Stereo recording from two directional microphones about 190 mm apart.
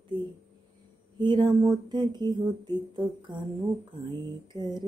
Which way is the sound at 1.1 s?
25° right (ahead or behind).